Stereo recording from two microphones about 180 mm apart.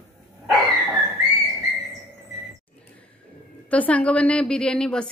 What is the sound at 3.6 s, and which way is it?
A woman's voice, 5° left (ahead or behind).